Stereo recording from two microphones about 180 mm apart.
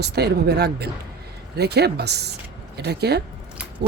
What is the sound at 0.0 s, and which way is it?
Speech, 65° right (ahead or behind).